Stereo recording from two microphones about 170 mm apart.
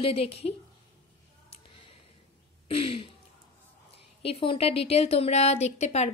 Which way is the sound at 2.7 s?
30° left (ahead or behind).